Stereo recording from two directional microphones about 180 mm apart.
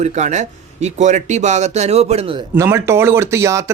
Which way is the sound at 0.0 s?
40° right (ahead or behind).